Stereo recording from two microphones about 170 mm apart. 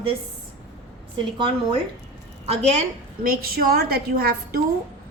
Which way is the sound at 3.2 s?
60° right (ahead or behind).